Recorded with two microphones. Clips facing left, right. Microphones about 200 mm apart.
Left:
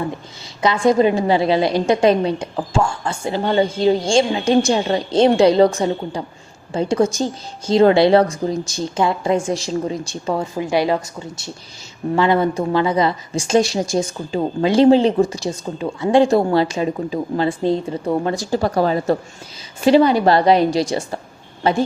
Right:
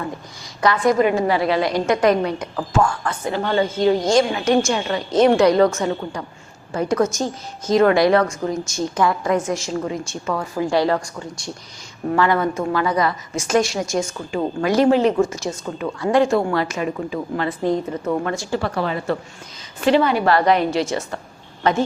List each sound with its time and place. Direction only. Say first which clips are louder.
0.6 s a woman's voice: left 2 dB; 25° left (ahead or behind)